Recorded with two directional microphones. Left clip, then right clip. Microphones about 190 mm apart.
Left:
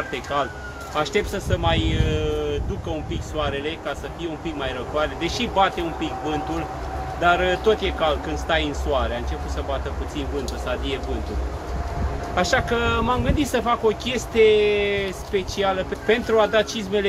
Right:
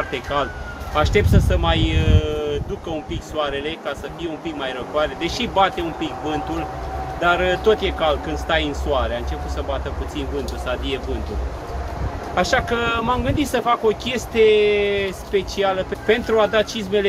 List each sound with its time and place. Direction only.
0.1 s speech: centre (ahead or behind)
12.4 s speech: centre (ahead or behind)